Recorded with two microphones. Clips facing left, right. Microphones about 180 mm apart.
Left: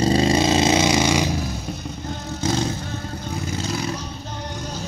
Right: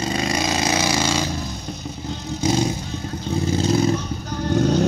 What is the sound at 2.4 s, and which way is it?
Vehicle, 15° right (ahead or behind).